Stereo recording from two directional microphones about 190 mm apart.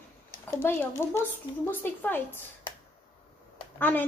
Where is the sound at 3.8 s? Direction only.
10° left (ahead or behind).